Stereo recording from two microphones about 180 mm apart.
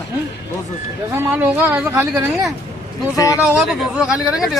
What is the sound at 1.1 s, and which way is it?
Speech, 10° right (ahead or behind).